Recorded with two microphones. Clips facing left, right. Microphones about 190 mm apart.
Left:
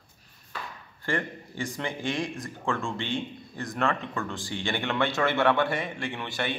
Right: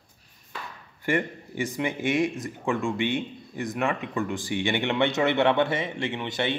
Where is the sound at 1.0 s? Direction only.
20° right (ahead or behind).